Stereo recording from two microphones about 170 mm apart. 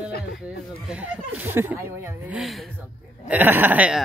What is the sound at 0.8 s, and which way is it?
Speech, 10° right (ahead or behind).